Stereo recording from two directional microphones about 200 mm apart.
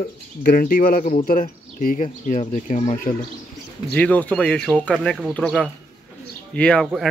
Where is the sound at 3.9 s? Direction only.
5° left (ahead or behind).